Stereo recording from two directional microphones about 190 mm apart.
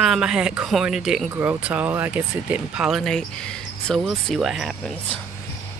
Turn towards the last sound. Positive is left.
turn(degrees=0)  # may be behind; listen again after turning